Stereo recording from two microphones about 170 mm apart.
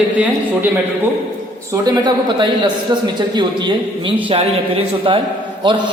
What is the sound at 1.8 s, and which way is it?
A man's voice, 25° right (ahead or behind).